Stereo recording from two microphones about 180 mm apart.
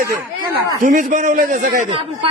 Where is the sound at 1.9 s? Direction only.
30° right (ahead or behind).